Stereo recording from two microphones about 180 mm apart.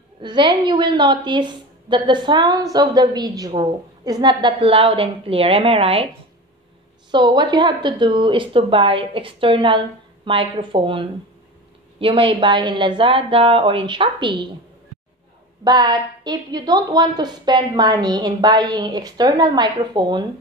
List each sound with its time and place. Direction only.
0.2 s a woman's voice: 25° right (ahead or behind)
7.1 s a woman's voice: 25° right (ahead or behind)
15.6 s a woman's voice: 25° right (ahead or behind)